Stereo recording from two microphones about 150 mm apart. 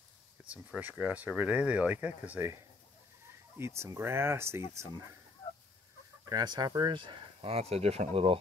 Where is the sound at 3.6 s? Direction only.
20° right (ahead or behind).